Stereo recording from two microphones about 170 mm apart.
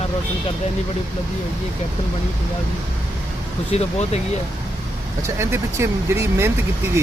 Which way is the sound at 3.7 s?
40° left (ahead or behind).